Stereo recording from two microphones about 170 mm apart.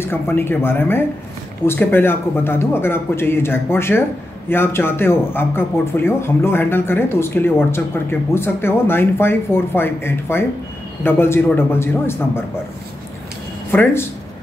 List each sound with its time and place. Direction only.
0.0 s speech: 15° left (ahead or behind)
13.7 s speech: 10° left (ahead or behind)